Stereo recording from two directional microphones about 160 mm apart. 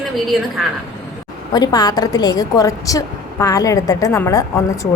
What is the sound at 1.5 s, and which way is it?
A woman's voice, 25° left (ahead or behind).